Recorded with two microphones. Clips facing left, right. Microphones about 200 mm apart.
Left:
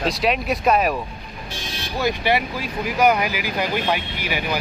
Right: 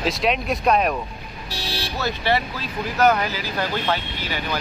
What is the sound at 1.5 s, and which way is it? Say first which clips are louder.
Vehicle: right 4 dB; 35° right (ahead or behind).